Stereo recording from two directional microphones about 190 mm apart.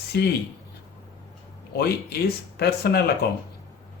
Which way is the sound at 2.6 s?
55° left (ahead or behind).